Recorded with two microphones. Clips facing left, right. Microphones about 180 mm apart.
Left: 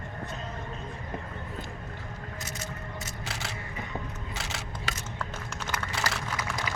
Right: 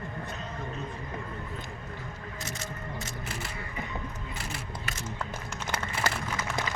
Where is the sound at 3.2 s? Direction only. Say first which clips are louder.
Even; 80° left.